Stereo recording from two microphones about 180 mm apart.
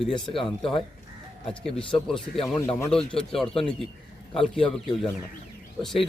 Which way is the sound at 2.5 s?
15° left (ahead or behind).